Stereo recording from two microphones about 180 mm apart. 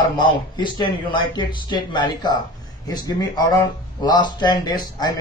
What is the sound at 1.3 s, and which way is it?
Speech, 25° left (ahead or behind).